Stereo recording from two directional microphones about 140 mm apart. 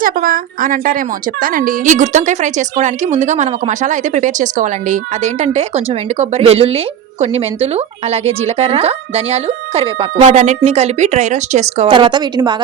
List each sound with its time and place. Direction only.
0.0 s a woman's voice: 90° right; by 10.1 s 45° right (ahead or behind)
10.2 s a woman's voice: 60° right (ahead or behind)
11.9 s a woman's voice: 35° right (ahead or behind)